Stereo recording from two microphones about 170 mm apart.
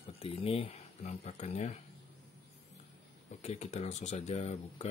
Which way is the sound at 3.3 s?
40° left (ahead or behind).